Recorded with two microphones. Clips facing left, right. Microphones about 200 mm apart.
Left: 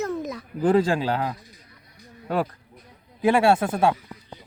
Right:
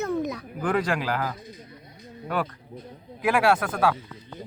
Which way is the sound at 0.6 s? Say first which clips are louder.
Left 5 dB; 30° left (ahead or behind).